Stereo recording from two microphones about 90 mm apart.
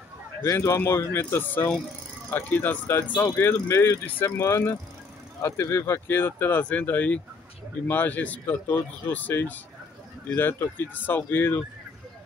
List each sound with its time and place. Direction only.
0.4 s speech: 35° left (ahead or behind)